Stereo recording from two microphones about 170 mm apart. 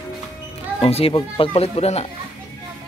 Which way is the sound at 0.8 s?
35° left (ahead or behind).